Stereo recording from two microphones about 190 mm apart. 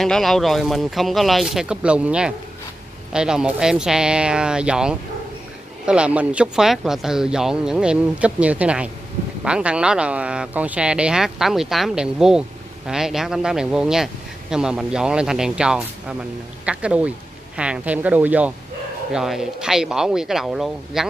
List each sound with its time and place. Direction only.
0.0 s speech: centre (ahead or behind)